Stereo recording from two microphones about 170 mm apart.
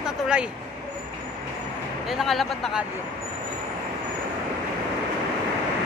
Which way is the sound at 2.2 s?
Centre (ahead or behind).